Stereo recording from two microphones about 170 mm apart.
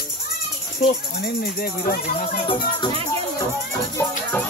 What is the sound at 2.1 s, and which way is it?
Speech, 35° left (ahead or behind).